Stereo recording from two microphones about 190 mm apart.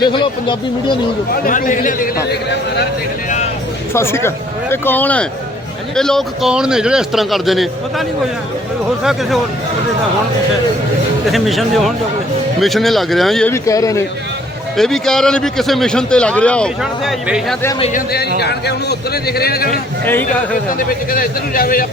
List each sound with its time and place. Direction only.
0.0 s speech: 25° left (ahead or behind)
1.3 s a man's voice: 45° left (ahead or behind)
3.9 s a man's voice: 15° left (ahead or behind)
11.3 s a man's voice: centre (ahead or behind)
13.5 s speech: 15° left (ahead or behind)
14.8 s a man's voice: centre (ahead or behind)
17.9 s a man's voice: 55° left (ahead or behind)